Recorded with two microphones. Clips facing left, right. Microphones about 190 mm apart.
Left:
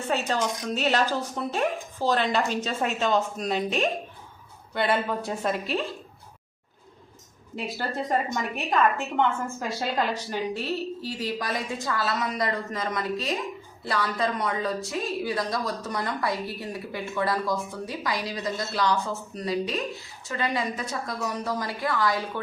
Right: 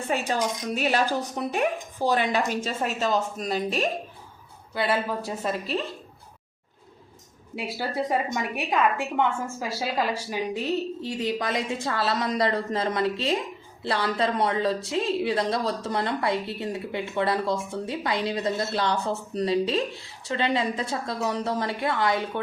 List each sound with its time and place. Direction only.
0.1 s a woman's voice: 10° right (ahead or behind)
7.5 s a woman's voice: 10° right (ahead or behind)